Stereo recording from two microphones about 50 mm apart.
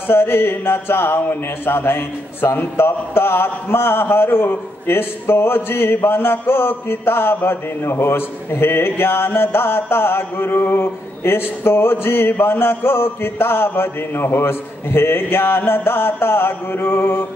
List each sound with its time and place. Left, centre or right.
0.1 s a man's voice: left